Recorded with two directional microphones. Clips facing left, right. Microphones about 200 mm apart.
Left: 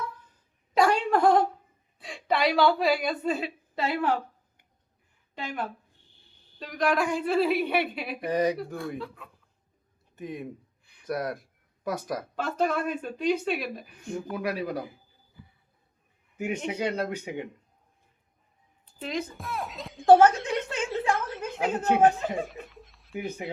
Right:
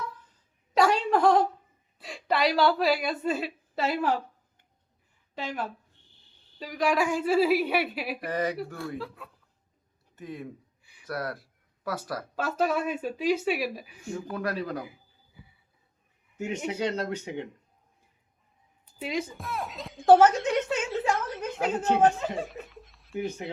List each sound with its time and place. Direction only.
0.7 s a sound: centre (ahead or behind)
2.0 s a woman's voice: centre (ahead or behind)
5.3 s speech: centre (ahead or behind)
8.3 s speech: 15° left (ahead or behind)
9.0 s speech: 5° right (ahead or behind)
10.2 s speech: 20° left (ahead or behind)
12.5 s speech: 5° right (ahead or behind)
14.3 s speech: 10° left (ahead or behind)
16.6 s speech: 10° left (ahead or behind)
18.9 s a woman's voice: 10° right (ahead or behind)